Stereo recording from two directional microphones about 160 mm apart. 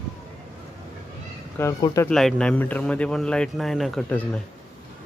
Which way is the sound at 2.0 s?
5° left (ahead or behind).